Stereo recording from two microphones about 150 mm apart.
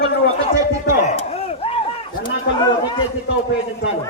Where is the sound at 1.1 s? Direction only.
45° left (ahead or behind).